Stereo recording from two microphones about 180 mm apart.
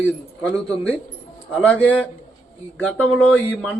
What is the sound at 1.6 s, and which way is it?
A man's voice, 5° left (ahead or behind).